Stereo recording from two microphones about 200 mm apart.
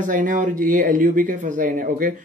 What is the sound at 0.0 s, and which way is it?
Speech, 40° right (ahead or behind).